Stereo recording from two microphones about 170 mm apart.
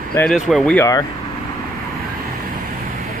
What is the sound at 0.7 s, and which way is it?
Speech, 20° left (ahead or behind).